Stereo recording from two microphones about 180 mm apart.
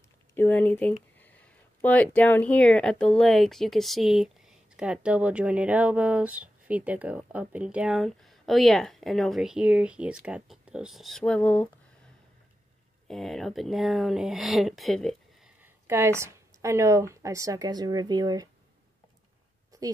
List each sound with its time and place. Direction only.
0.3 s speech: 10° left (ahead or behind)
13.1 s speech: centre (ahead or behind)
15.6 s speech: 15° right (ahead or behind)
19.7 s a sound: 20° right (ahead or behind)